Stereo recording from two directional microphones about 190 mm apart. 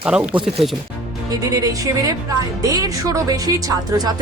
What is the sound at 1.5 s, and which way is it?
Speech, 20° right (ahead or behind).